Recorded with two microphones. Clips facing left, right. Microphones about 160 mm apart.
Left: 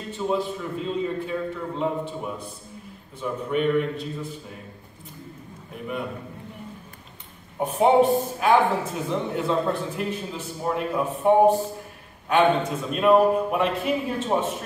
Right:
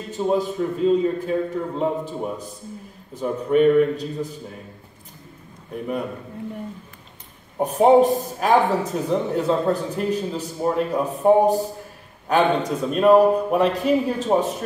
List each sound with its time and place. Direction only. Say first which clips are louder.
0.1 s a man's voice: right 4 dB; 40° right (ahead or behind)
7.5 s a man's voice: right 4 dB; 40° right (ahead or behind)